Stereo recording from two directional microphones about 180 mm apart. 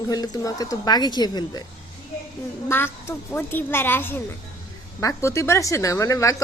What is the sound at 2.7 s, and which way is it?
Speech, 15° left (ahead or behind).